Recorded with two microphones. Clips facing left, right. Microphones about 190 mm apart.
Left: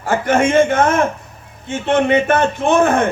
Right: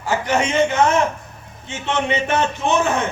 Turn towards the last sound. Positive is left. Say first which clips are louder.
# left 5 dB
turn(degrees=55)  # may be behind; listen again after turning